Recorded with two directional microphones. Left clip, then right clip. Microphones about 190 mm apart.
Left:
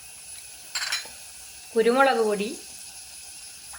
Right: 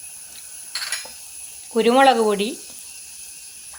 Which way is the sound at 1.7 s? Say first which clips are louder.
Right 5 dB; 30° right (ahead or behind).